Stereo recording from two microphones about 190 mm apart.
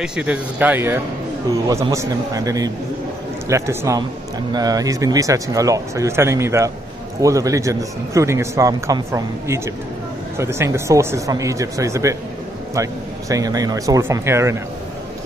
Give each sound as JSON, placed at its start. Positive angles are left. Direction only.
{"t": 0.0, "sound": "a man's voice", "side_deg": -5}